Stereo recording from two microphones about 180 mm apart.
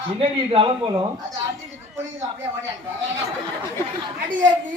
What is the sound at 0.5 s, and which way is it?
Speech, 25° right (ahead or behind).